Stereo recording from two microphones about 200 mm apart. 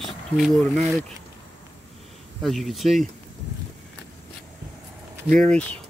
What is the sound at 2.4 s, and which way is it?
Speech, centre (ahead or behind).